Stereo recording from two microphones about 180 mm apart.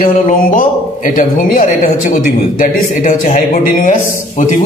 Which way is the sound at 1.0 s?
50° left (ahead or behind).